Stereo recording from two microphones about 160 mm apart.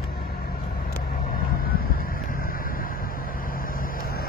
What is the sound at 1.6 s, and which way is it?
Vehicle, 65° left (ahead or behind).